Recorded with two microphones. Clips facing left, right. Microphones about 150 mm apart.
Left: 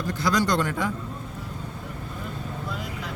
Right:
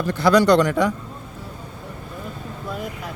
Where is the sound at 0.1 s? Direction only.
65° right (ahead or behind); by 0.9 s 85° right.